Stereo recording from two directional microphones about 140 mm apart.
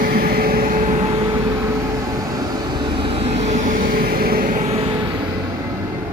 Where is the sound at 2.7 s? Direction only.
45° right (ahead or behind); by 4.7 s 80° right.